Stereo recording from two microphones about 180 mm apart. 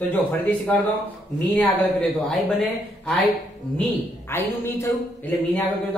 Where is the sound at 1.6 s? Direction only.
5° left (ahead or behind).